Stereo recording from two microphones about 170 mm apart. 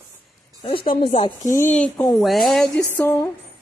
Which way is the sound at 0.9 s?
35° left (ahead or behind).